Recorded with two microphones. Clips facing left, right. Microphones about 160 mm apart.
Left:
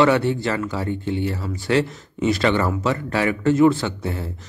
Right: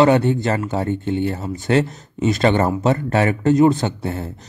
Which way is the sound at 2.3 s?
45° right (ahead or behind).